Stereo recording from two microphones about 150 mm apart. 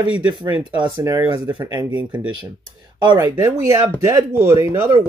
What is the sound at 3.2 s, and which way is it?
Speech, 20° right (ahead or behind).